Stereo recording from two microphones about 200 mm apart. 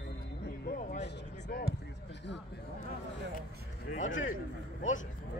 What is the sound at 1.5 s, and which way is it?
Basketball bounce, 50° left (ahead or behind).